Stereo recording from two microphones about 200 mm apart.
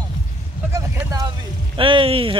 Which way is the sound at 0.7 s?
15° right (ahead or behind).